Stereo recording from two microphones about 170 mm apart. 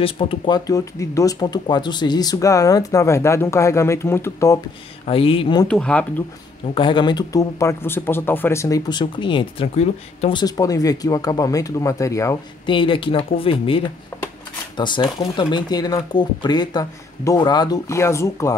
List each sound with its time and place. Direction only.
0.0 s speech: 30° left (ahead or behind)
0.7 s speech: 20° left (ahead or behind)
5.0 s speech: 35° left (ahead or behind)
5.7 s speech: 5° left (ahead or behind)
6.7 s speech: 30° left (ahead or behind)
10.4 s speech: 20° left (ahead or behind)
12.6 s speech: 30° left (ahead or behind)